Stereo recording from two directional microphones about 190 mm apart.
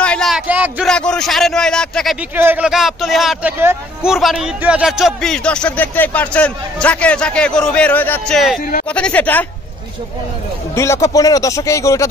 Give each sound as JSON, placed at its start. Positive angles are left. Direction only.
{"t": 0.0, "sound": "a sound", "side_deg": 5}
{"t": 0.5, "sound": "speech", "side_deg": -10}
{"t": 0.8, "sound": "a man's voice", "side_deg": 5}
{"t": 2.3, "sound": "a man's voice", "side_deg": -10}
{"t": 10.7, "sound": "speech", "side_deg": 15}